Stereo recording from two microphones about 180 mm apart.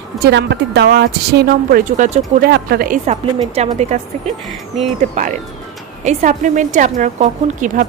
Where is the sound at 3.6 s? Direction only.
35° right (ahead or behind).